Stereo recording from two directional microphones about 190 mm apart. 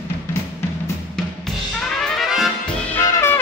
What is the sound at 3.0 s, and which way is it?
Trumpet, 15° left (ahead or behind).